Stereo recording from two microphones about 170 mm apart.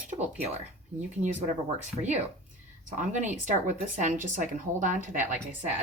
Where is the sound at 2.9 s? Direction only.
45° right (ahead or behind).